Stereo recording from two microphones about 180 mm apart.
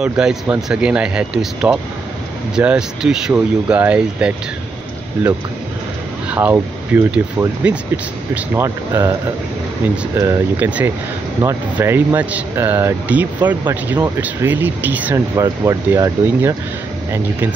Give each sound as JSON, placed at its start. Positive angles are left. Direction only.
{"t": 0.0, "sound": "speech", "side_deg": -5}
{"t": 6.3, "sound": "speech", "side_deg": -10}
{"t": 10.1, "sound": "speech", "side_deg": -15}